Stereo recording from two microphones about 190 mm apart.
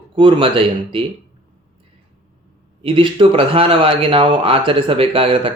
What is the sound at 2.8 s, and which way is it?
Speech, 25° right (ahead or behind).